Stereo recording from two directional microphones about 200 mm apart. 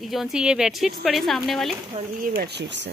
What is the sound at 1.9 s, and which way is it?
Speech, 30° right (ahead or behind).